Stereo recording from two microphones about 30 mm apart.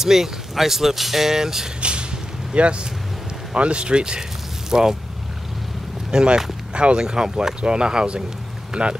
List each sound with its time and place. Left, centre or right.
0.0 s speech: centre
1.8 s vehicle: right
2.5 s speech: right
4.6 s speech: centre
6.1 s speech: right
7.2 s speech: centre
7.6 s speech: right